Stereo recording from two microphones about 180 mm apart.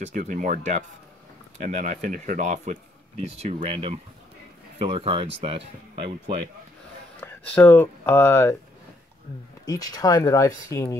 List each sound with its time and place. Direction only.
0.0 s speech: 45° right (ahead or behind)
7.2 s speech: 10° left (ahead or behind)
9.7 s speech: 20° left (ahead or behind)